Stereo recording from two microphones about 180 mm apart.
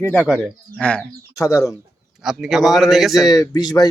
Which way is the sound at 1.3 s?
20° left (ahead or behind).